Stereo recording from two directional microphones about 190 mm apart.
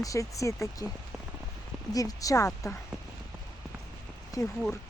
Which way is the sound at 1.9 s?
20° left (ahead or behind).